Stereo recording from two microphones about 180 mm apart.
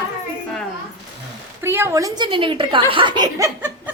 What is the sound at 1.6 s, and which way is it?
A woman's voice, 15° right (ahead or behind).